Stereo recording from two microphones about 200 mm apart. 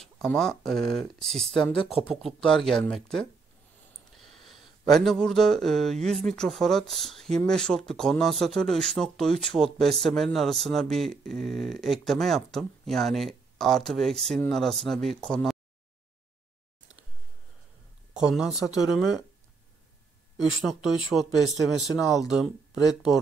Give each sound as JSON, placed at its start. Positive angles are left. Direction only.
{"t": 0.0, "sound": "speech", "side_deg": 0}
{"t": 1.7, "sound": "speech", "side_deg": 30}
{"t": 2.0, "sound": "speech", "side_deg": 0}
{"t": 18.1, "sound": "speech", "side_deg": -5}
{"t": 20.4, "sound": "speech", "side_deg": 0}
{"t": 21.3, "sound": "speech", "side_deg": 15}
{"t": 21.6, "sound": "speech", "side_deg": 0}
{"t": 21.9, "sound": "speech", "side_deg": 15}